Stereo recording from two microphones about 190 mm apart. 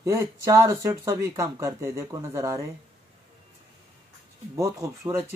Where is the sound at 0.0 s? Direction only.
15° right (ahead or behind).